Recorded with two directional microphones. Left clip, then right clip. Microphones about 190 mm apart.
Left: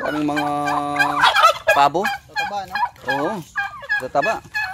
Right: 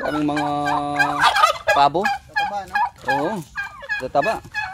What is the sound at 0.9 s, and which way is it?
Fowl, 5° right (ahead or behind).